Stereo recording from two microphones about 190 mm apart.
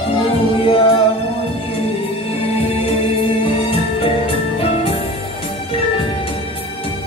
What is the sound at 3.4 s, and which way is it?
Music, 30° left (ahead or behind).